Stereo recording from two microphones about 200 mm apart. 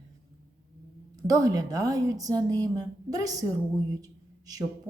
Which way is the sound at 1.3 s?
20° right (ahead or behind).